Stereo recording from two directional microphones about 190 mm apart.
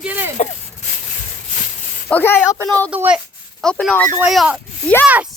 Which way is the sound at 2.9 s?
5° right (ahead or behind).